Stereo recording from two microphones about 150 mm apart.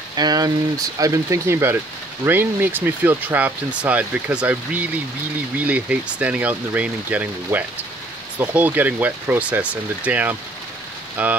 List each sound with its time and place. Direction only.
0.1 s speech: 25° right (ahead or behind); by 11.3 s 10° right (ahead or behind)